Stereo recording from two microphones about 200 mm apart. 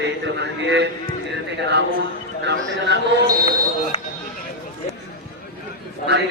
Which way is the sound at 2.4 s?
60° right (ahead or behind).